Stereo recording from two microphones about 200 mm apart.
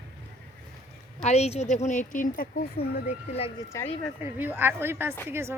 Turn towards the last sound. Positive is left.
turn(degrees=-10)  # may be behind; listen again after turning